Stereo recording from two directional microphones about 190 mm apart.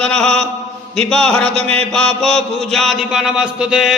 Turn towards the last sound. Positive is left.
turn(degrees=-5)  # may be behind; listen again after turning